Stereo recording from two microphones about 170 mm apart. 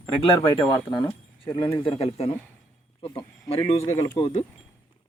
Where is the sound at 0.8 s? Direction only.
25° left (ahead or behind).